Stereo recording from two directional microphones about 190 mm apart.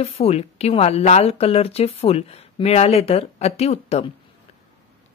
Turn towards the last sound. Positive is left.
turn(degrees=35)  # may be behind; listen again after turning